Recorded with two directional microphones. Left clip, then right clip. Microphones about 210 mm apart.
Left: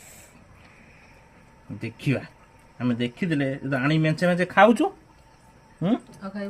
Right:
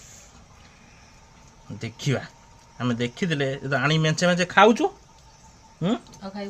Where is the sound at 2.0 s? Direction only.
40° right (ahead or behind).